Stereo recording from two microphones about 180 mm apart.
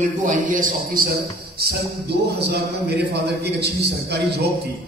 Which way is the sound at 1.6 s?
60° right (ahead or behind).